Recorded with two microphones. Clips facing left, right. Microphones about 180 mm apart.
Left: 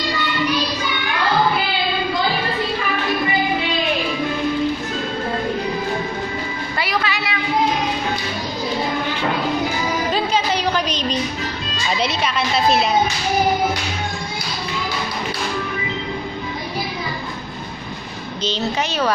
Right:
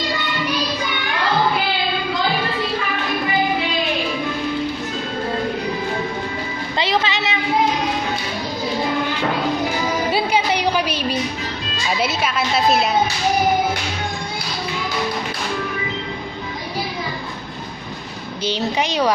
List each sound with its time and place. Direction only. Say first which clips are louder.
6.8 s music: right 3 dB; 25° right (ahead or behind)
10.1 s music: right 1 dB; 10° right (ahead or behind)
11.9 s a woman's voice: even; 5° right (ahead or behind)
18.4 s a sound: right 1 dB; 15° right (ahead or behind)